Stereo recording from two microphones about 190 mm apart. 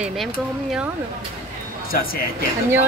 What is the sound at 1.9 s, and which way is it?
Speech, 50° left (ahead or behind).